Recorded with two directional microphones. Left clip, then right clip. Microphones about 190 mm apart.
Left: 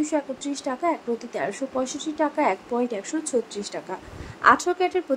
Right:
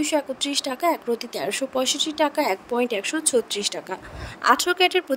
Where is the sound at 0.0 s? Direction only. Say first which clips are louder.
Right 3 dB; 50° right (ahead or behind).